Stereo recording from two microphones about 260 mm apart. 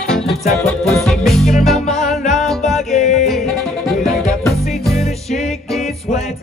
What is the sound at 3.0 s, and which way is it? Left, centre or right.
Music, left.